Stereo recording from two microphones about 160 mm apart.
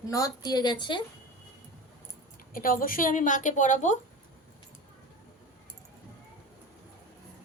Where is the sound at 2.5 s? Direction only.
60° left (ahead or behind).